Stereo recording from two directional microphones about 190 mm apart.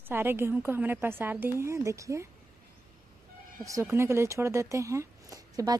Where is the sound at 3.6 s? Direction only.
15° right (ahead or behind).